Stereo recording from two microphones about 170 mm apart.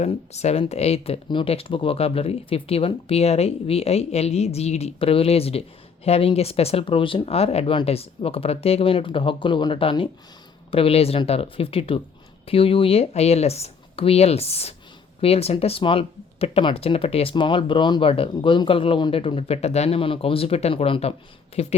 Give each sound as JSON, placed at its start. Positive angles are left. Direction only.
{"t": 0.0, "sound": "speech", "side_deg": 40}